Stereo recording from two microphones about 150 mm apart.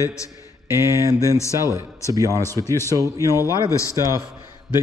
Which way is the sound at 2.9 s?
20° right (ahead or behind).